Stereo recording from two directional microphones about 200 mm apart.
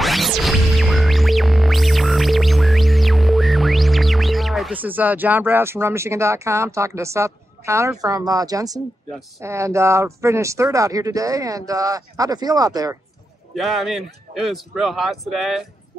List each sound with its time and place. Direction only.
0.0 s music: centre (ahead or behind)
8.0 s speech: 20° right (ahead or behind)
13.6 s a man's voice: centre (ahead or behind)